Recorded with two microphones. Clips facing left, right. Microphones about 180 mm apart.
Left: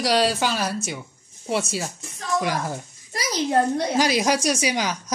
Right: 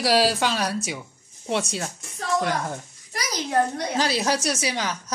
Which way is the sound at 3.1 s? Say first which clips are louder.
Left 3 dB; 25° left (ahead or behind).